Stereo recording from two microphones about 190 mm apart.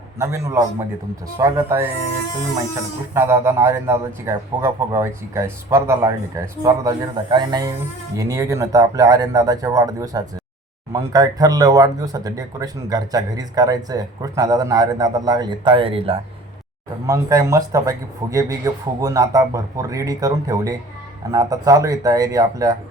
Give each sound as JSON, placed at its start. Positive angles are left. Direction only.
{"t": 0.2, "sound": "a man's voice", "side_deg": -15}
{"t": 3.2, "sound": "a man's voice", "side_deg": -15}
{"t": 17.1, "sound": "a man's voice", "side_deg": -20}